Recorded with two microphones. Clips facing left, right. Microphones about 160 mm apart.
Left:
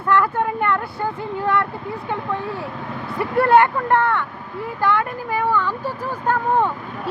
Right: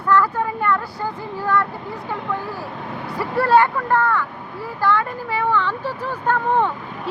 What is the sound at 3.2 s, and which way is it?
Speech, 25° left (ahead or behind).